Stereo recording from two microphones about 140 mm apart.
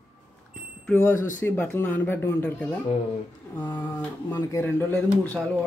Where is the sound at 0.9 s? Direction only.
20° left (ahead or behind).